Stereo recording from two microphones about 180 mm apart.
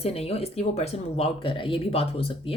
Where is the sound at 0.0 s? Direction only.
35° left (ahead or behind).